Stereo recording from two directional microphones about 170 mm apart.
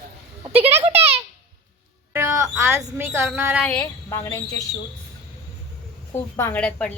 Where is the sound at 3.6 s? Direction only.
10° left (ahead or behind).